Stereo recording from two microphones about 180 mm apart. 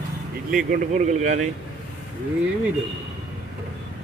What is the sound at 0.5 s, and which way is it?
Speech, 50° right (ahead or behind).